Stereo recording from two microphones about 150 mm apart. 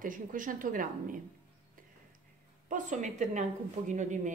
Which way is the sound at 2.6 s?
55° right (ahead or behind).